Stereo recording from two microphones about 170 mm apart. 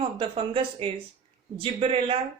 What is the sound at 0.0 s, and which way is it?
Speech, 30° right (ahead or behind).